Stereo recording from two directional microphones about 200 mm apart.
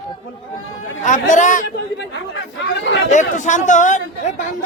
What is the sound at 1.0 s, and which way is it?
Speech, 40° left (ahead or behind).